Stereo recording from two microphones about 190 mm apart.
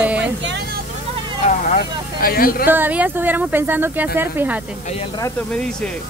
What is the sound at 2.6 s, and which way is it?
Speech, 10° right (ahead or behind).